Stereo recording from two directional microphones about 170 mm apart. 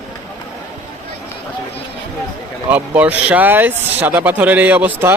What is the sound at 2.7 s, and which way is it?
Speech, 10° right (ahead or behind).